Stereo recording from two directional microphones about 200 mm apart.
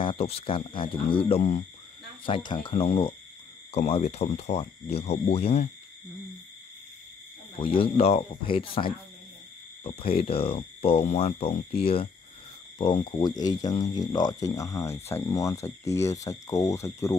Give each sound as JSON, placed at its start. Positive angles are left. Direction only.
{"t": 0.0, "sound": "speech", "side_deg": 25}
{"t": 7.6, "sound": "speech", "side_deg": 25}